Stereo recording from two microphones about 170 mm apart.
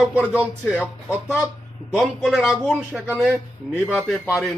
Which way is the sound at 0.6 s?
10° right (ahead or behind).